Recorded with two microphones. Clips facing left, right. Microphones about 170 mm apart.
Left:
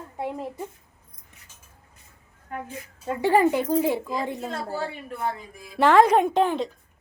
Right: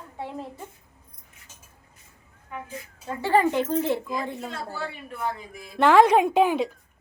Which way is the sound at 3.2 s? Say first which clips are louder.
Left 2 dB; 10° left (ahead or behind).